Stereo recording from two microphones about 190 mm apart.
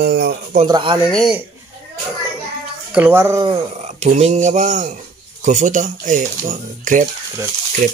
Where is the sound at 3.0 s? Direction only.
10° right (ahead or behind).